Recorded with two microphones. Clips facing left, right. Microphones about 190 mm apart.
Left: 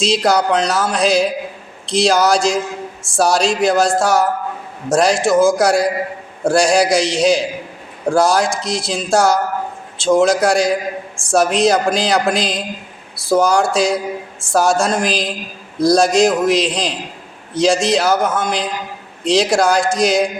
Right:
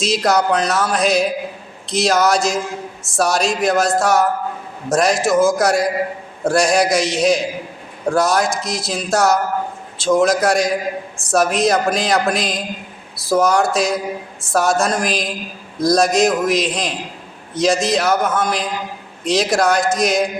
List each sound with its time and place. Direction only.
0.0 s a woman's voice: 30° left (ahead or behind)